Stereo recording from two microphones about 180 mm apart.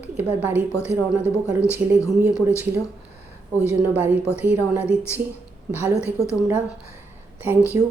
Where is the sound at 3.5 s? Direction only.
15° left (ahead or behind).